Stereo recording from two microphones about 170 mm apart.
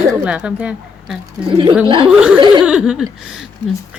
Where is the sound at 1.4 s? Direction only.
30° right (ahead or behind).